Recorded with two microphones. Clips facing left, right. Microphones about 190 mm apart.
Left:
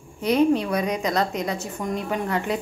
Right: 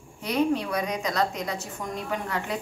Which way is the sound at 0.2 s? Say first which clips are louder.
Left 5 dB; 25° left (ahead or behind).